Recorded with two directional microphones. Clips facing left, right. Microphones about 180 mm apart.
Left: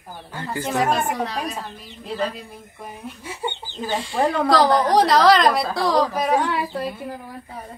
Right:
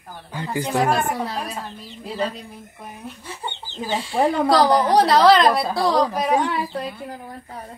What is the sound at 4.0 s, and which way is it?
A woman's voice, centre (ahead or behind).